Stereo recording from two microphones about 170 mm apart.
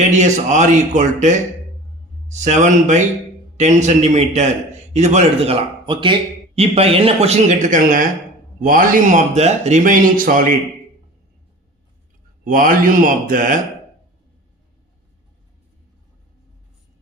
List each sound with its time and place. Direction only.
0.1 s a man's voice: 45° right (ahead or behind)
12.5 s a man's voice: 55° right (ahead or behind)